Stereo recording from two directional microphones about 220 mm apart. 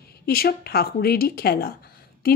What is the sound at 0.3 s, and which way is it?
A woman's voice, 45° left (ahead or behind).